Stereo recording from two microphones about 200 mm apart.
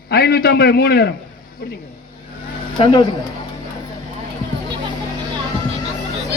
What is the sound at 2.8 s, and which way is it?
Speech, 25° left (ahead or behind).